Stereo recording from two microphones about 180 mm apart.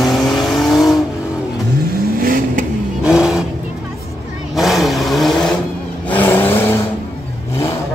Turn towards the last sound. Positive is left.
turn(degrees=10)  # may be behind; listen again after turning